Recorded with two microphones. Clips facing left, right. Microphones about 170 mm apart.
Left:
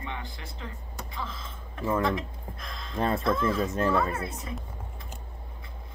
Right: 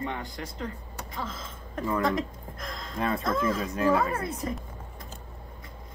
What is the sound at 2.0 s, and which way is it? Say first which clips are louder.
Speech: right 1 dB; 45° right (ahead or behind).